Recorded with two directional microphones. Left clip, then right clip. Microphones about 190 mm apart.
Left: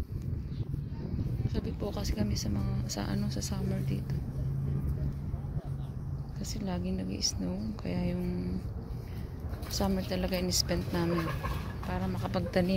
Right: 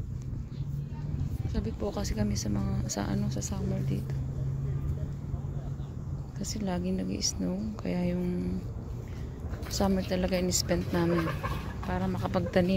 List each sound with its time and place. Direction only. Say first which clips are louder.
1.5 s a woman's voice: right 4 dB; 15° right (ahead or behind)
3.1 s speech: right 2 dB; centre (ahead or behind)
6.4 s a woman's voice: right 4 dB; 25° right (ahead or behind)
9.7 s a woman's voice: right 3 dB; 20° right (ahead or behind)
11.1 s speech: right 3 dB; centre (ahead or behind)
11.8 s a woman's voice: right 4 dB; 15° right (ahead or behind)